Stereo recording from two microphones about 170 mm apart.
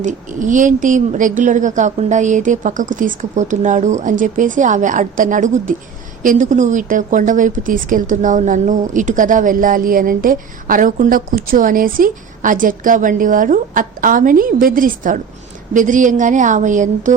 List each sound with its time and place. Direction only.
0.0 s speech: 50° right (ahead or behind)